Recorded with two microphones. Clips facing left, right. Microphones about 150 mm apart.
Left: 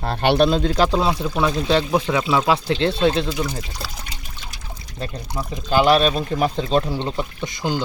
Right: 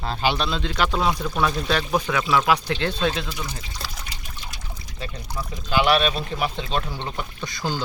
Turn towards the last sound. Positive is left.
turn(degrees=20)  # may be behind; listen again after turning